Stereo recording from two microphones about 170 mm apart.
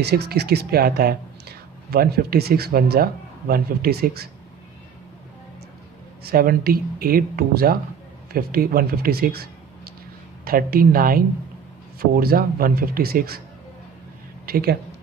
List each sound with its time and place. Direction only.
0.0 s speech: 70° right (ahead or behind)
6.2 s speech: 65° right (ahead or behind)
14.4 s speech: 65° right (ahead or behind)